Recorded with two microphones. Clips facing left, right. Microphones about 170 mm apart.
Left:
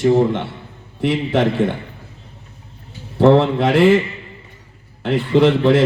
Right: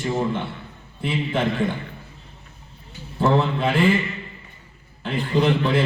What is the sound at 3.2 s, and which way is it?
Speech, 80° left.